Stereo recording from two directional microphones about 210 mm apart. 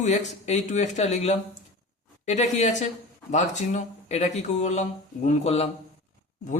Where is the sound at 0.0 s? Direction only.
35° left (ahead or behind).